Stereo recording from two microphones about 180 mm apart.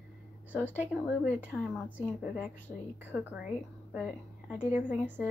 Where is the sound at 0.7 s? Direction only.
10° right (ahead or behind).